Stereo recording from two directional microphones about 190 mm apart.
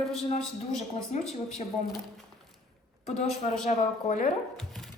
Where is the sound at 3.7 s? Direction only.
40° left (ahead or behind).